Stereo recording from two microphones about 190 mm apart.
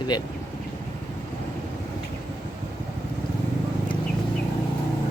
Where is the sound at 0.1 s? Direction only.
20° left (ahead or behind).